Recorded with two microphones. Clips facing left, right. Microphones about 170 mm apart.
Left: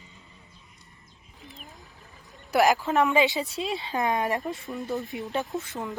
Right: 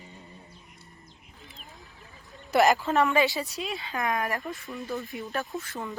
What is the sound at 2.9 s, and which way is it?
Speech, 20° left (ahead or behind).